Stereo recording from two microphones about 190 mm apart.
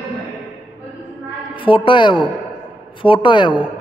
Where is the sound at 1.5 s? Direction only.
25° left (ahead or behind).